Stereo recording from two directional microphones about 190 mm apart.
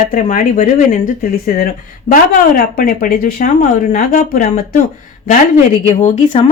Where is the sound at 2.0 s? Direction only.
45° left (ahead or behind).